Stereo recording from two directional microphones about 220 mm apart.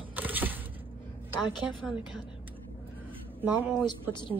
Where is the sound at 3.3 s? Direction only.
10° right (ahead or behind).